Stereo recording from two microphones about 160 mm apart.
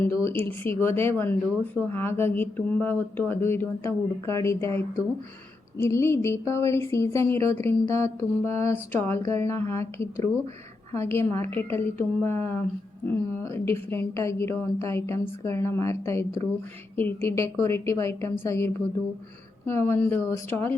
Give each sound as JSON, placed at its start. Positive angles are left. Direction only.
{"t": 0.0, "sound": "speech", "side_deg": 15}
{"t": 11.5, "sound": "speech", "side_deg": 15}